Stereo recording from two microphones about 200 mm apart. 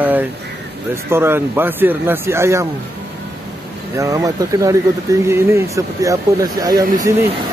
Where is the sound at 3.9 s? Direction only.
15° right (ahead or behind).